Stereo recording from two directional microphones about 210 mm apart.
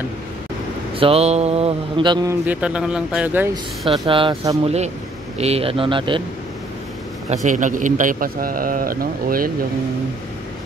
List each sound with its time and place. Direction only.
0.9 s a man's voice: 25° right (ahead or behind)
2.4 s speech: 5° right (ahead or behind)
4.0 s a man's voice: 25° right (ahead or behind)
7.4 s a man's voice: 35° right (ahead or behind)